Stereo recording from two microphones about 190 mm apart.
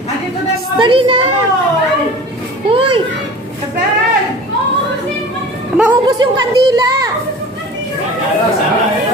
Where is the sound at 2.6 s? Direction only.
30° right (ahead or behind).